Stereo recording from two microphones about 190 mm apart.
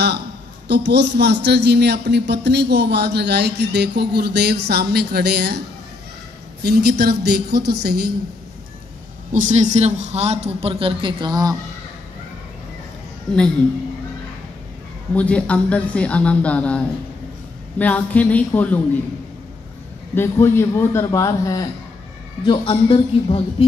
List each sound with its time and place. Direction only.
0.7 s a man's voice: 65° right (ahead or behind)
6.6 s a man's voice: 60° right (ahead or behind)
9.3 s a man's voice: 40° right (ahead or behind); by 11.5 s 20° right (ahead or behind)
15.1 s speech: 5° left (ahead or behind)
20.2 s a woman's voice: 10° left (ahead or behind); by 23.4 s 30° left (ahead or behind)